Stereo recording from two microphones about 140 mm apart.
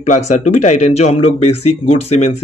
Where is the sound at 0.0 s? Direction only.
60° left (ahead or behind).